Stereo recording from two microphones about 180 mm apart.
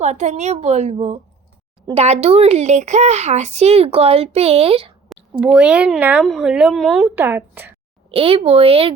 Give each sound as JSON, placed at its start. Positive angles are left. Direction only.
{"t": 0.0, "sound": "speech", "side_deg": -40}
{"t": 5.4, "sound": "a woman's voice", "side_deg": -5}
{"t": 8.1, "sound": "speech", "side_deg": -30}